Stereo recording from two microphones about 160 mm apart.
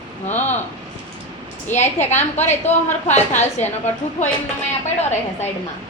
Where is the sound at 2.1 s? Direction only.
45° left (ahead or behind).